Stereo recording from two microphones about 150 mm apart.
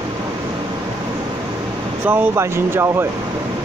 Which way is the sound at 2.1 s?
15° right (ahead or behind).